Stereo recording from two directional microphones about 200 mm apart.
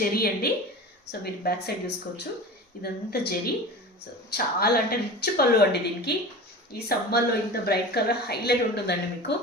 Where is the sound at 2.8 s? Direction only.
50° left (ahead or behind).